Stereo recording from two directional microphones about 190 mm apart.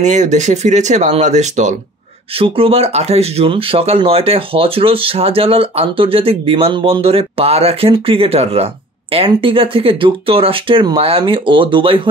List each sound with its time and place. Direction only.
0.0 s speech: 40° right (ahead or behind)